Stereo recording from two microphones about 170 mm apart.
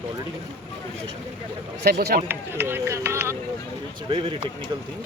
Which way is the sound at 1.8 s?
70° right (ahead or behind).